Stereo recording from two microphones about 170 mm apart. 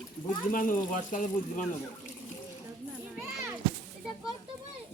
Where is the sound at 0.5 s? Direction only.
50° left (ahead or behind).